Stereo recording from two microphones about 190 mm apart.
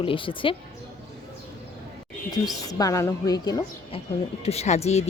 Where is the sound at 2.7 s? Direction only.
20° left (ahead or behind).